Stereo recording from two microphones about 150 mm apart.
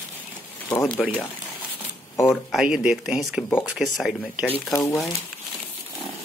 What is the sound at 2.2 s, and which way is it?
Speech, centre (ahead or behind).